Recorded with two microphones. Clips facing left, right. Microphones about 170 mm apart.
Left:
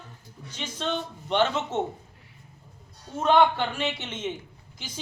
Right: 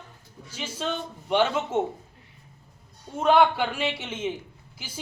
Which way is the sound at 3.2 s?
10° right (ahead or behind).